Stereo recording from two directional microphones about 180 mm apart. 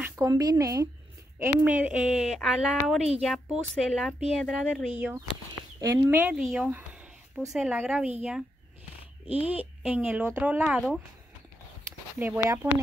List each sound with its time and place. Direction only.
0.0 s speech: 15° right (ahead or behind)
9.5 s speech: 10° right (ahead or behind)
12.6 s speech: 10° right (ahead or behind)